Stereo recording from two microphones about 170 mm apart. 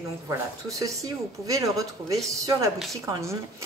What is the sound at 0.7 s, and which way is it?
Speech, 20° right (ahead or behind).